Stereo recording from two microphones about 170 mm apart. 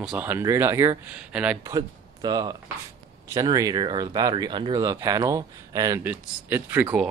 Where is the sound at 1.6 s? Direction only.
25° right (ahead or behind).